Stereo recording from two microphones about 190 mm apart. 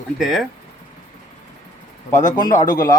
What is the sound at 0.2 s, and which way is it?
Speech, centre (ahead or behind).